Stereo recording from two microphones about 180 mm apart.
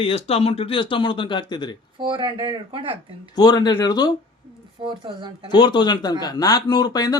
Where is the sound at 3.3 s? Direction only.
20° left (ahead or behind).